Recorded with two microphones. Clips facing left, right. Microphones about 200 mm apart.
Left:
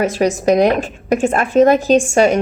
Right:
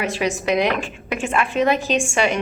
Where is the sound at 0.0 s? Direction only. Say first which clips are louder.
Left 7 dB; 40° left (ahead or behind).